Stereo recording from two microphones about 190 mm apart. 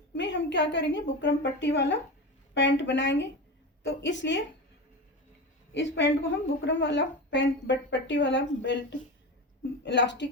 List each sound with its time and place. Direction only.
0.1 s a woman's voice: 70° left (ahead or behind)
5.7 s a woman's voice: 75° left (ahead or behind)